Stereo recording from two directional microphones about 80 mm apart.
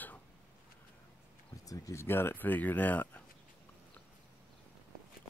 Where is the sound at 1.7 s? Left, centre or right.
Left.